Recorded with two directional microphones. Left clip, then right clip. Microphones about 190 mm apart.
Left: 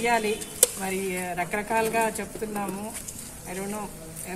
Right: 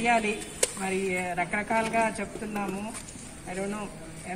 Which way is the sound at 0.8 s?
20° left (ahead or behind).